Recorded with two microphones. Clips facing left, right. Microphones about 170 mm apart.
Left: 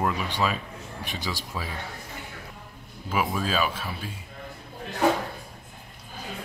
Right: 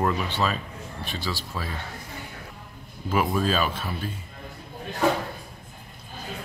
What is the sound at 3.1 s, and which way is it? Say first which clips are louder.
Speech: right 3 dB; 5° left (ahead or behind).